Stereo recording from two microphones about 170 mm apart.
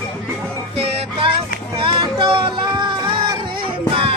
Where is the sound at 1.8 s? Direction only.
30° right (ahead or behind).